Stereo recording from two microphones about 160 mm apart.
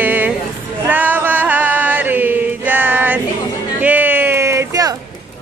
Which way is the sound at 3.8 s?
10° right (ahead or behind).